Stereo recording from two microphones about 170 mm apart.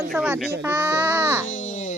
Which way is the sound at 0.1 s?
5° right (ahead or behind).